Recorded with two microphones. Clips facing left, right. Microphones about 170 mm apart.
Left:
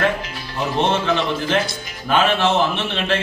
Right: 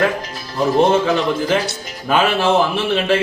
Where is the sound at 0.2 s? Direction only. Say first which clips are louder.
Right 5 dB; 40° right (ahead or behind).